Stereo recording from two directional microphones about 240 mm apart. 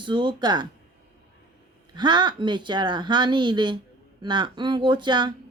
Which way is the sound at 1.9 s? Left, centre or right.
Centre.